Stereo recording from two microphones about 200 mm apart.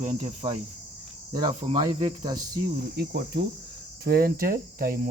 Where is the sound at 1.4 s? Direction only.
30° right (ahead or behind).